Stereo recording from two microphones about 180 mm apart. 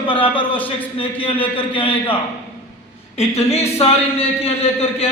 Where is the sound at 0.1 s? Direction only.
30° left (ahead or behind).